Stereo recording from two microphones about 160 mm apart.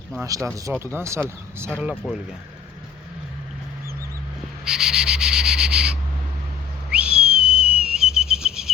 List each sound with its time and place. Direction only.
0.2 s speech: 20° right (ahead or behind)
4.6 s cricket: 5° right (ahead or behind)
6.9 s whistle: 5° right (ahead or behind)